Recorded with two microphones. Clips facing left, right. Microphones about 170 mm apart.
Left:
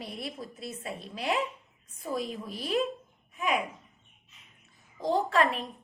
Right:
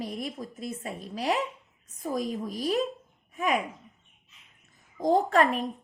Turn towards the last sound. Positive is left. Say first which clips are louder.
# right 3 dB
turn(degrees=-45)  # may be behind; listen again after turning